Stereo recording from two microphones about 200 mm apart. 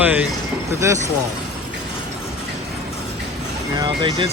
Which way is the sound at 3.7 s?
25° right (ahead or behind).